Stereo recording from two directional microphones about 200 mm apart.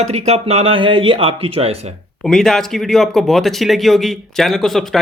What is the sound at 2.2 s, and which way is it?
Speech, centre (ahead or behind).